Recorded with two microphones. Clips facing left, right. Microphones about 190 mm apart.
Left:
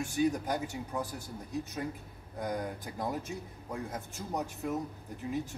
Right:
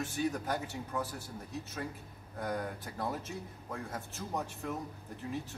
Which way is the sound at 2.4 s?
15° left (ahead or behind).